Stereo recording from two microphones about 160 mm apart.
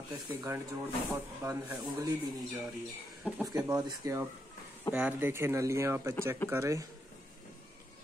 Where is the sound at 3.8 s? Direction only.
20° right (ahead or behind).